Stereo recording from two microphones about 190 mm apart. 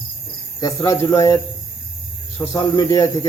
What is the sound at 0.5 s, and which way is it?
Speech, 20° left (ahead or behind).